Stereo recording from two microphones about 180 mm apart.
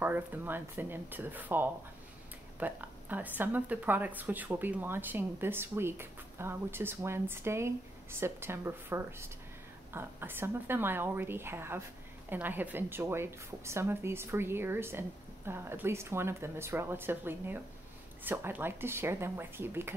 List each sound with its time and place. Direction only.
0.0 s a woman's voice: 10° right (ahead or behind)